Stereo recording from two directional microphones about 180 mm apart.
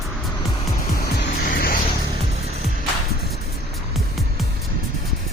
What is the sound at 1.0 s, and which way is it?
Music, 60° left (ahead or behind).